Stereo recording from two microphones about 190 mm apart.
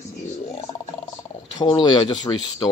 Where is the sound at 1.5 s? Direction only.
25° left (ahead or behind).